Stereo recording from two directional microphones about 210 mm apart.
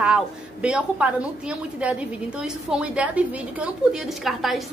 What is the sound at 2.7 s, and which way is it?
A woman's voice, 5° right (ahead or behind).